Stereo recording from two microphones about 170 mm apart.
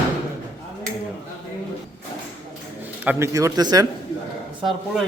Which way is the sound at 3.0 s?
15° right (ahead or behind).